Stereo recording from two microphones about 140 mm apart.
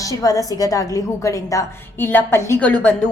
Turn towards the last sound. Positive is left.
turn(degrees=10)  # may be behind; listen again after turning